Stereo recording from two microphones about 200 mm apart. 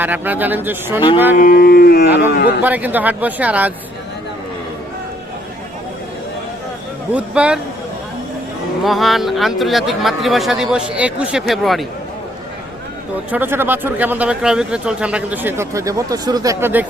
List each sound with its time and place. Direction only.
0.0 s speech: 10° right (ahead or behind)
0.9 s speech: 25° left (ahead or behind)
1.4 s a sound: 45° left (ahead or behind)
2.6 s speech: 10° right (ahead or behind)
7.1 s speech: 5° right (ahead or behind)
8.8 s speech: centre (ahead or behind)
13.3 s speech: 10° right (ahead or behind)